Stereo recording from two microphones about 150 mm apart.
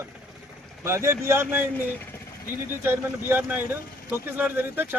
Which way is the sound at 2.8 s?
15° right (ahead or behind).